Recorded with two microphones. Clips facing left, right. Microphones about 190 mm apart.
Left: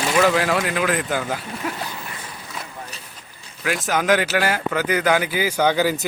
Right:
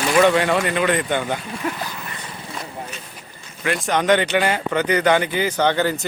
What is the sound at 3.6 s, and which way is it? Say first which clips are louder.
A man's voice: right 2 dB; 5° left (ahead or behind).